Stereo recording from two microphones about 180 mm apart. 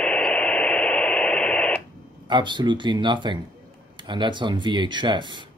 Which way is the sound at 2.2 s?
25° right (ahead or behind).